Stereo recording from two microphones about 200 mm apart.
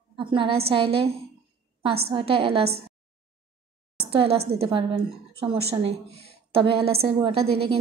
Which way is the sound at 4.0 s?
30° right (ahead or behind).